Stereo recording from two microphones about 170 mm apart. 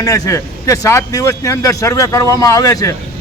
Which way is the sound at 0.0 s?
20° left (ahead or behind).